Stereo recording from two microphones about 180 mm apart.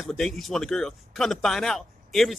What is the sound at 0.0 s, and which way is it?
Speech, centre (ahead or behind).